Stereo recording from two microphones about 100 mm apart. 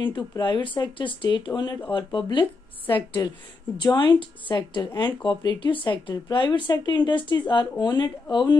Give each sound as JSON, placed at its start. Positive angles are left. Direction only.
{"t": 0.0, "sound": "speech", "side_deg": 50}
{"t": 3.2, "sound": "speech", "side_deg": 40}
{"t": 3.7, "sound": "speech", "side_deg": 50}